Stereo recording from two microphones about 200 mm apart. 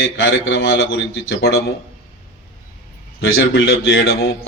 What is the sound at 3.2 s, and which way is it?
A man's voice, 60° left (ahead or behind).